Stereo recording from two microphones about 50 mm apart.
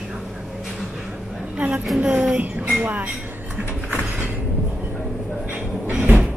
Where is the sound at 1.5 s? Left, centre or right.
Right.